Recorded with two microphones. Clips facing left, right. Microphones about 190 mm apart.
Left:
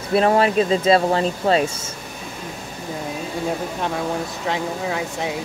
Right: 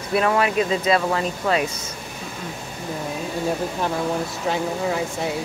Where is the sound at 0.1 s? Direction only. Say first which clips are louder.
Left 3 dB; 30° left (ahead or behind).